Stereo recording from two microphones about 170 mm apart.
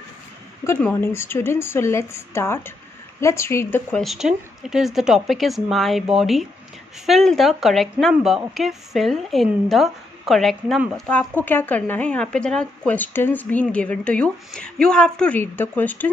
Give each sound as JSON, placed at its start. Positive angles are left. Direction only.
{"t": 0.7, "sound": "a woman's voice", "side_deg": 10}
{"t": 4.0, "sound": "speech", "side_deg": 0}